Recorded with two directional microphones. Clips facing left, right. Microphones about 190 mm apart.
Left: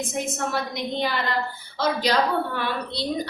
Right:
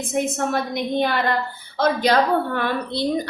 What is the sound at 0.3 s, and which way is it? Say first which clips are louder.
A woman's voice: right 4 dB; 55° right (ahead or behind).